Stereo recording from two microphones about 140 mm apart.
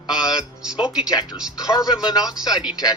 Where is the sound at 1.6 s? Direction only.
25° left (ahead or behind).